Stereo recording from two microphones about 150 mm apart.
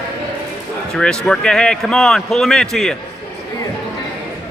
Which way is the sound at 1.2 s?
5° left (ahead or behind).